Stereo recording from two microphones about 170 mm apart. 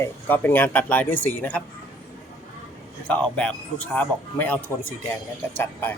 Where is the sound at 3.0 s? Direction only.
5° left (ahead or behind).